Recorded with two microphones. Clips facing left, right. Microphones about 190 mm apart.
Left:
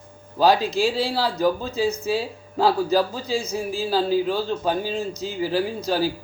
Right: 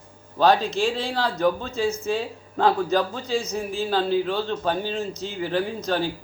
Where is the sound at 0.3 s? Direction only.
10° left (ahead or behind).